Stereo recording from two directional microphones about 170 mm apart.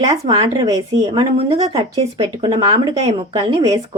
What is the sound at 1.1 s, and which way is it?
Speech, 35° right (ahead or behind).